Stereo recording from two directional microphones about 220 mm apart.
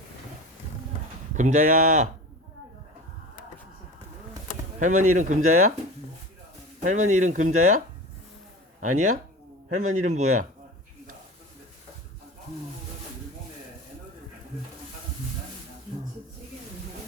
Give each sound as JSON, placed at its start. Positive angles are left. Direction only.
{"t": 1.3, "sound": "speech", "side_deg": -35}
{"t": 4.8, "sound": "speech", "side_deg": -35}
{"t": 6.7, "sound": "speech", "side_deg": -35}
{"t": 8.8, "sound": "a man's voice", "side_deg": -35}